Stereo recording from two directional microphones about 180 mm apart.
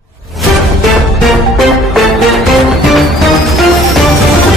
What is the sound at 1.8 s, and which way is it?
Music, centre (ahead or behind).